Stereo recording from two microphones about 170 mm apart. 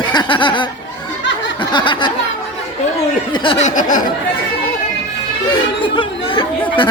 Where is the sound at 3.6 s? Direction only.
50° left (ahead or behind).